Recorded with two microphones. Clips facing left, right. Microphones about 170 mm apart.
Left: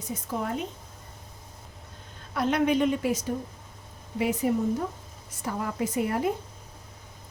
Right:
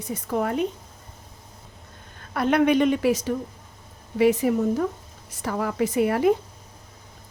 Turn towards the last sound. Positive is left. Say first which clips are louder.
# right 7 dB
turn(degrees=-85)